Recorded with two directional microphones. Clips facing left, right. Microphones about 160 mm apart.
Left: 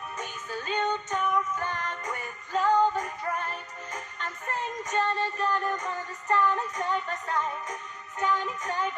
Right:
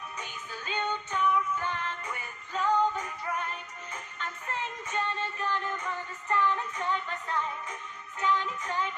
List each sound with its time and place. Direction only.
0.2 s music: 45° left (ahead or behind)
8.2 s music: 45° left (ahead or behind)